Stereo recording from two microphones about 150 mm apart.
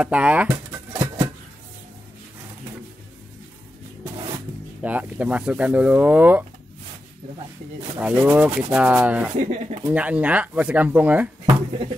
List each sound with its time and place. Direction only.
0.0 s a sound: 10° right (ahead or behind)
4.8 s speech: 10° right (ahead or behind)
8.0 s speech: 10° right (ahead or behind)
9.4 s speech: 50° right (ahead or behind)
9.8 s speech: 10° right (ahead or behind)